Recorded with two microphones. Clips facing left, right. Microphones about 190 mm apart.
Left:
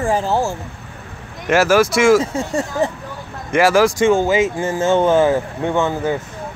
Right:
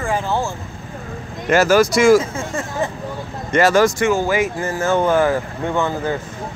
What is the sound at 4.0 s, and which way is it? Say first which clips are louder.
Speech: left 3 dB; 25° left (ahead or behind).